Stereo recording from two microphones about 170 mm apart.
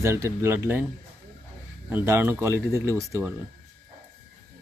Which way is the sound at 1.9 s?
15° right (ahead or behind).